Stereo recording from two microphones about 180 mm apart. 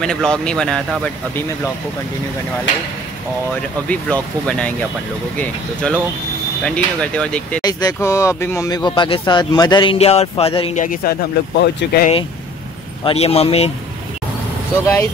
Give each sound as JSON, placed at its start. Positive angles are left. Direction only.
{"t": 0.0, "sound": "speech", "side_deg": 5}
{"t": 3.9, "sound": "speech", "side_deg": 5}
{"t": 7.6, "sound": "speech", "side_deg": 20}
{"t": 10.8, "sound": "speech", "side_deg": 55}
{"t": 13.0, "sound": "speech", "side_deg": 35}